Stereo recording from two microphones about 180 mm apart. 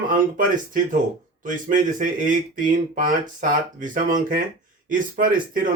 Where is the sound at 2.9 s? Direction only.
45° right (ahead or behind).